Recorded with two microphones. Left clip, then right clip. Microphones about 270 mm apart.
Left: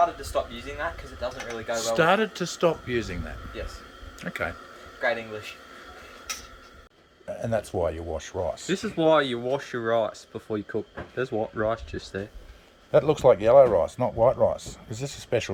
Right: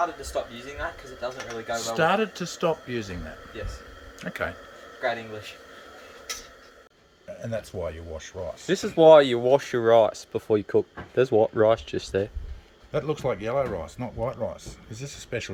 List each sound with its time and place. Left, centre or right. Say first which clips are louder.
1.2 s speech: left 1 dB; centre
7.3 s speech: left 5 dB; centre
8.6 s speech: right 8 dB; right
12.9 s speech: left 9 dB; left